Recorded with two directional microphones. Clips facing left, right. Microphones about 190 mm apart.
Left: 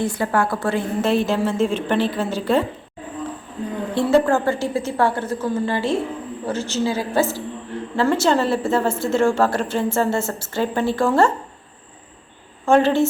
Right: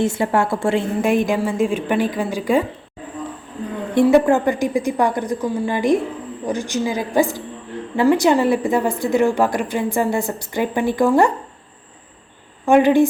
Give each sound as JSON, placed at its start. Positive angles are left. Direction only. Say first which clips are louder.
{"t": 0.0, "sound": "a woman's voice", "louder": "right 2 dB", "side_deg": -25}
{"t": 1.0, "sound": "a woman's voice", "louder": "even", "side_deg": -15}
{"t": 3.9, "sound": "a woman's voice", "louder": "right 4 dB", "side_deg": -20}
{"t": 12.6, "sound": "a woman's voice", "louder": "right 3 dB", "side_deg": -15}